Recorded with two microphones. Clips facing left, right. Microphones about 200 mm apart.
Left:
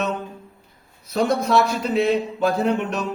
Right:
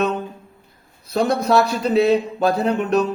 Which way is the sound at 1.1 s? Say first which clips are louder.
Right 2 dB; 35° right (ahead or behind).